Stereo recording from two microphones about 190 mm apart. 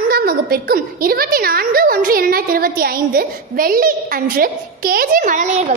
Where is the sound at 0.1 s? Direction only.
50° right (ahead or behind).